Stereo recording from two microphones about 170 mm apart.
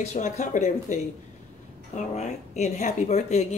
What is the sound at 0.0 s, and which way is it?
Speech, 45° left (ahead or behind).